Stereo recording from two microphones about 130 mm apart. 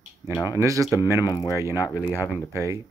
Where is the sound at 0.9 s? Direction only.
25° left (ahead or behind).